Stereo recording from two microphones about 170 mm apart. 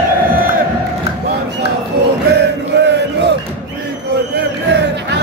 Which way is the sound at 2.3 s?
90° right.